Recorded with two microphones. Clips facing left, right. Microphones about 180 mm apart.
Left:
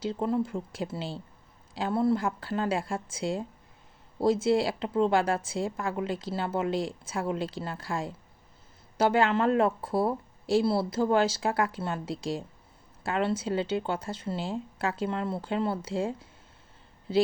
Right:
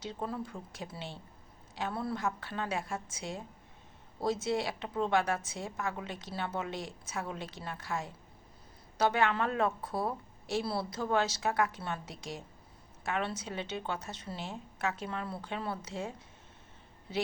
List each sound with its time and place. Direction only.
0.0 s a woman's voice: 30° left (ahead or behind)